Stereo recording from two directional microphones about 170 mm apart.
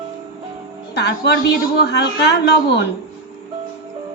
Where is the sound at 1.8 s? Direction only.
85° left.